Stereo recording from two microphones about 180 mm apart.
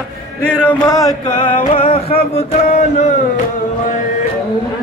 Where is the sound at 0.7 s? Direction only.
20° left (ahead or behind).